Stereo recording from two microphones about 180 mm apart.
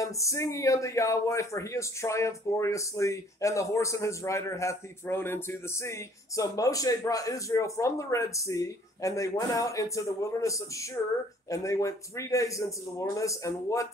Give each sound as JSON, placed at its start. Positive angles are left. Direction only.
{"t": 0.0, "sound": "speech", "side_deg": 15}